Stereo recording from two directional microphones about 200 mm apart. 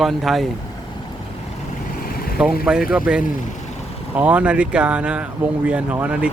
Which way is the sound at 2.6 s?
5° right (ahead or behind).